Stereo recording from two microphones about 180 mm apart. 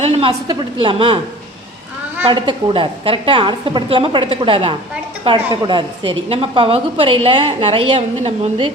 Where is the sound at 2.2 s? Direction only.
25° right (ahead or behind).